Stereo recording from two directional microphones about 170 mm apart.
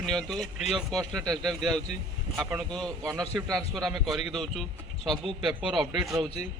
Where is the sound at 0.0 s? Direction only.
Centre (ahead or behind).